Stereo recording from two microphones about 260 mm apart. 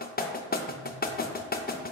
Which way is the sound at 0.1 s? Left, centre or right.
Left.